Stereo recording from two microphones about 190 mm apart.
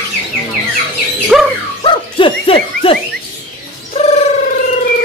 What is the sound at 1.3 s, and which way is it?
Dog, centre (ahead or behind).